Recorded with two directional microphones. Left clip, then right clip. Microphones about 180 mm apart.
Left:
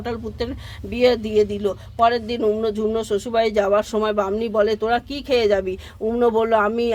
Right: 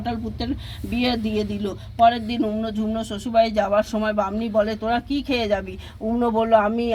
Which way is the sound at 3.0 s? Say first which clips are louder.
Right 4 dB; 35° left (ahead or behind).